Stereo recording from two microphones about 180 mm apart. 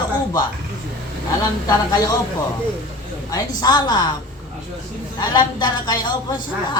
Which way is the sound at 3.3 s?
20° left (ahead or behind).